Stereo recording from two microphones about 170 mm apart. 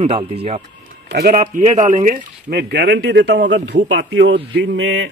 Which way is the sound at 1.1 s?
55° right (ahead or behind).